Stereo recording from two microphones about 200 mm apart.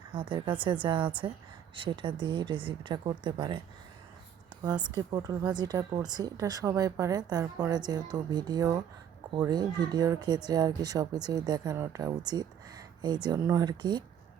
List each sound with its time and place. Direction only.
0.1 s speech: 25° right (ahead or behind)
4.6 s speech: 20° right (ahead or behind)